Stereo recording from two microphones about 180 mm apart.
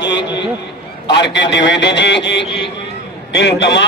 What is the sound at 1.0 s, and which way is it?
A man's voice, 75° left (ahead or behind).